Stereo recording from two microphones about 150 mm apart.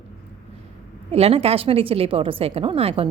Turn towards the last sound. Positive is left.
turn(degrees=-40)  # may be behind; listen again after turning